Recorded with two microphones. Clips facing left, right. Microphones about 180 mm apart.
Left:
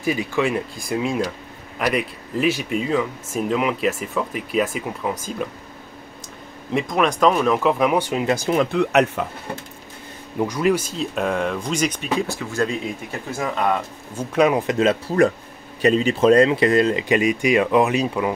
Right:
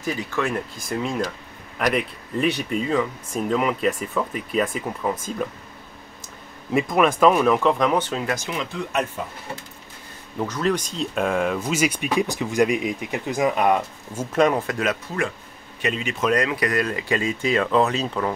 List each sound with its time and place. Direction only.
0.0 s speech: 15° left (ahead or behind)
0.8 s speech: 5° left (ahead or behind)
6.7 s speech: 5° right (ahead or behind); by 8.4 s 15° left (ahead or behind)
8.4 s speech: 45° left (ahead or behind)
8.7 s speech: 70° left (ahead or behind)
10.4 s speech: 10° left (ahead or behind); by 14.2 s 15° right (ahead or behind)
14.3 s speech: 5° left (ahead or behind)
14.7 s speech: 25° left (ahead or behind); by 18.3 s 10° left (ahead or behind)